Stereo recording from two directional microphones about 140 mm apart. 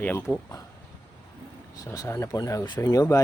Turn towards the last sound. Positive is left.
turn(degrees=25)  # may be behind; listen again after turning